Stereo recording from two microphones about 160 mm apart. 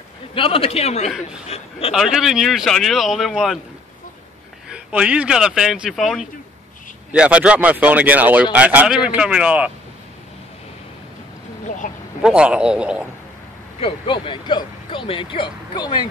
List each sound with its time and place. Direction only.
0.3 s speech: 35° left (ahead or behind)
2.0 s speech: 5° right (ahead or behind)
4.6 s speech: 5° right (ahead or behind)
11.6 s vehicle: 50° left (ahead or behind)
12.2 s speech: 5° right (ahead or behind)
13.7 s speech: 35° left (ahead or behind)